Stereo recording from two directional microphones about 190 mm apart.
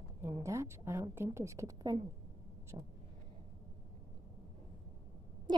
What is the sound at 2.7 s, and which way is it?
Vehicle, 25° right (ahead or behind).